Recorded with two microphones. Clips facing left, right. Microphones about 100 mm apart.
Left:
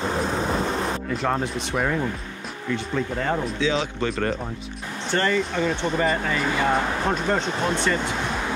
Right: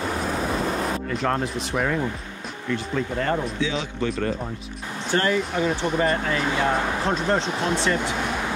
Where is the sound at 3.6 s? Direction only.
90° left.